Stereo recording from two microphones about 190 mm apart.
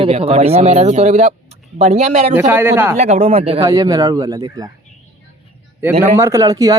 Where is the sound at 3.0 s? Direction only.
35° right (ahead or behind).